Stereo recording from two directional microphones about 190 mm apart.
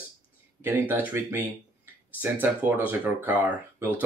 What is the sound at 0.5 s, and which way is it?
Speech, 10° right (ahead or behind).